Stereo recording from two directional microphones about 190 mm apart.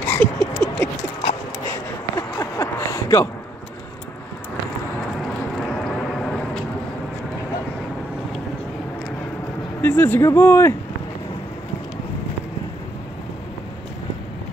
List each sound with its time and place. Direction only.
0.0 s a sound: 10° left (ahead or behind)
5.6 s vehicle: centre (ahead or behind)
9.8 s speech: 10° left (ahead or behind)